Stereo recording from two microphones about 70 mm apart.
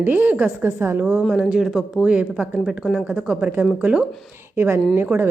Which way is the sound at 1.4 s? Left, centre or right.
Centre.